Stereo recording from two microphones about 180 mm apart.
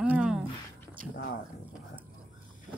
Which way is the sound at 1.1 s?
60° left (ahead or behind).